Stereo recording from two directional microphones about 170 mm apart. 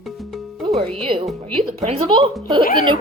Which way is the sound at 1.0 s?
35° right (ahead or behind).